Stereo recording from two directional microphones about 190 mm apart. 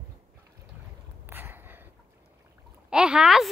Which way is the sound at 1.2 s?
10° right (ahead or behind).